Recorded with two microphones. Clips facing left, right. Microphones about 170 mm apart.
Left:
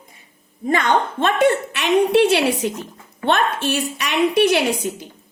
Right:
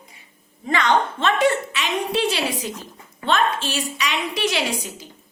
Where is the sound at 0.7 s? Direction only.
50° left (ahead or behind).